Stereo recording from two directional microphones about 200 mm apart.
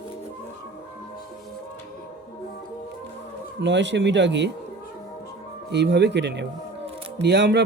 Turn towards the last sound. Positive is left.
turn(degrees=-60)  # may be behind; listen again after turning